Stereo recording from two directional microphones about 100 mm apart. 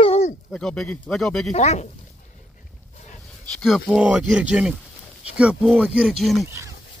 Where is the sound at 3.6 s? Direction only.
5° right (ahead or behind).